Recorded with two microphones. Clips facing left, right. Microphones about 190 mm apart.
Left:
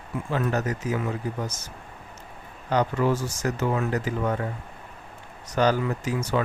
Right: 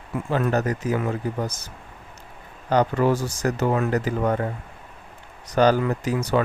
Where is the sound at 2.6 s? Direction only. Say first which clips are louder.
Right 3 dB; 35° right (ahead or behind).